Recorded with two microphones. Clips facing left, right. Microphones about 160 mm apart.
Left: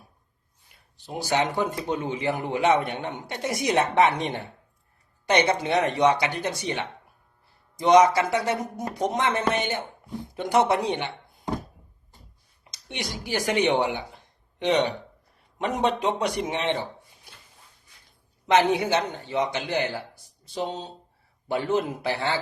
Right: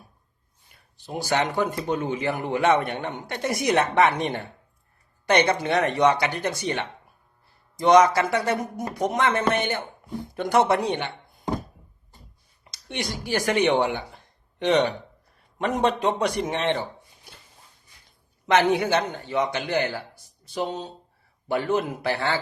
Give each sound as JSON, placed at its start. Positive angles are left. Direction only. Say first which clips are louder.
{"t": 1.2, "sound": "a woman's voice", "louder": "right 1 dB", "side_deg": 15}
{"t": 12.9, "sound": "a woman's voice", "louder": "right 3 dB", "side_deg": 15}
{"t": 15.6, "sound": "a woman's voice", "louder": "right 2 dB", "side_deg": 15}
{"t": 18.4, "sound": "speech", "louder": "right 1 dB", "side_deg": 15}